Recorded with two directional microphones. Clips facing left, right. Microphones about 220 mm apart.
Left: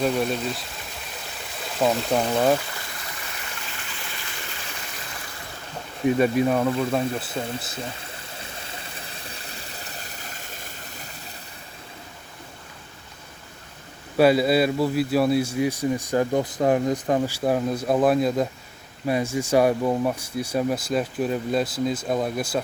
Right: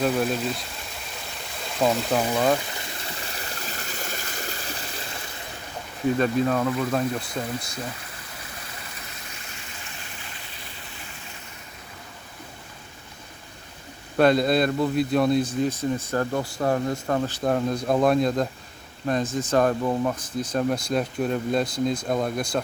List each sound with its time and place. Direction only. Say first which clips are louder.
0.0 s speech: even; centre (ahead or behind)
3.3 s stream: right 3 dB; 35° right (ahead or behind)
6.1 s speech: left 2 dB; 10° left (ahead or behind)
8.4 s a sound: left 2 dB; 25° left (ahead or behind)
14.2 s speech: left 1 dB; 5° left (ahead or behind)